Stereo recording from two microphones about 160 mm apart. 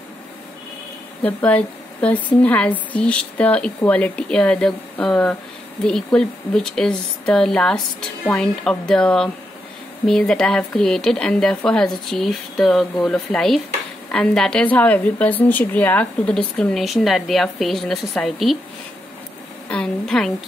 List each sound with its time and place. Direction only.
1.2 s a woman's voice: 10° left (ahead or behind)
19.7 s speech: 5° left (ahead or behind)